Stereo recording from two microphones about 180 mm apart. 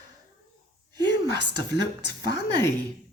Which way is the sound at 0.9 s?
25° right (ahead or behind).